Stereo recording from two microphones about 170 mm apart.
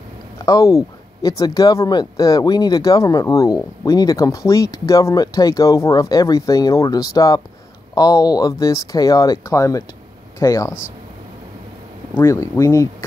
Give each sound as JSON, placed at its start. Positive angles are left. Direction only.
{"t": 0.5, "sound": "speech", "side_deg": 20}
{"t": 12.1, "sound": "speech", "side_deg": 15}